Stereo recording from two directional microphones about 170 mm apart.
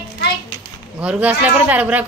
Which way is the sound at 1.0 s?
10° right (ahead or behind).